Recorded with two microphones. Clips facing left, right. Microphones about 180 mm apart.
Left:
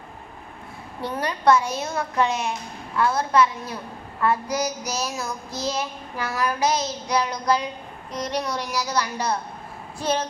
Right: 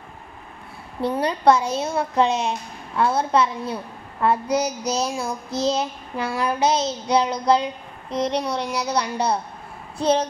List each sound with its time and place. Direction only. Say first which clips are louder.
1.2 s speech: right 1 dB; 30° right (ahead or behind)
3.0 s child singing: right 1 dB; 30° right (ahead or behind)
8.1 s speech: right 4 dB; 30° right (ahead or behind)